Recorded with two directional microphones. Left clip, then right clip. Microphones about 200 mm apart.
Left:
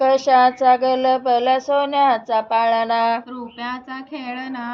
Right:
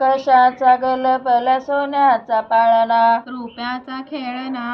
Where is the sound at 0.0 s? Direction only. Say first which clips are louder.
Right 1 dB; 40° left (ahead or behind).